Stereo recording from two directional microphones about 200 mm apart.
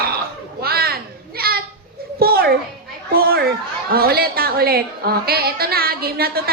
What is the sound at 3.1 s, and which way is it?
Children playing, 50° right (ahead or behind).